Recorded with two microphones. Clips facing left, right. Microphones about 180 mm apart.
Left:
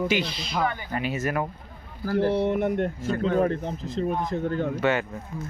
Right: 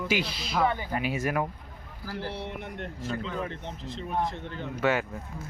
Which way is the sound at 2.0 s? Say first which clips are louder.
Left 13 dB; 50° left (ahead or behind).